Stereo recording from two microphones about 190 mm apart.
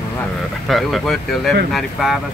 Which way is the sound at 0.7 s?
Centre (ahead or behind).